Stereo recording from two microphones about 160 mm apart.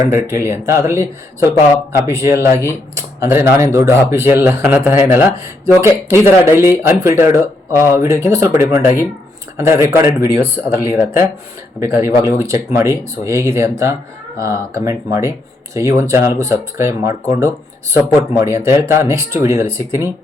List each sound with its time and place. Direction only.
0.1 s speech: 15° right (ahead or behind)